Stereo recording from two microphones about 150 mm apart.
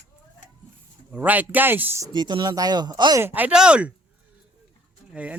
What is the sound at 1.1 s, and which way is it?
Speech, 10° right (ahead or behind).